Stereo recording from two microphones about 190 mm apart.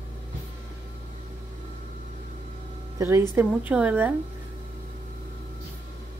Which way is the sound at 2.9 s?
15° right (ahead or behind).